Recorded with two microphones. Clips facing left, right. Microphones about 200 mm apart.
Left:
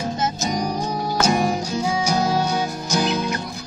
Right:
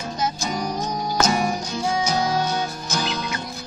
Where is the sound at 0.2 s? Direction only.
20° left (ahead or behind).